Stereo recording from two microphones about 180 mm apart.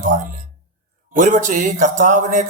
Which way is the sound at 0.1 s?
45° right (ahead or behind).